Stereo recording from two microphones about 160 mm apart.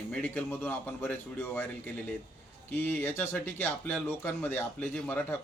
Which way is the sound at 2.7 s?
15° left (ahead or behind).